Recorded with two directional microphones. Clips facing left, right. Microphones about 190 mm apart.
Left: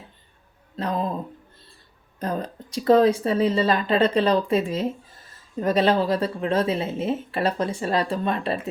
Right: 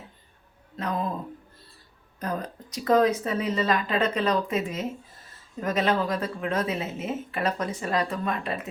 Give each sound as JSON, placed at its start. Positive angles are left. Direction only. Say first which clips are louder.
{"t": 0.8, "sound": "speech", "louder": "left 3 dB", "side_deg": 30}
{"t": 2.1, "sound": "a woman's voice", "louder": "left 3 dB", "side_deg": 30}